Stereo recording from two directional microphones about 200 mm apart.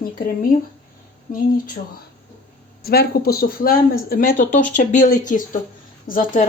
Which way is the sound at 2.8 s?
50° left (ahead or behind).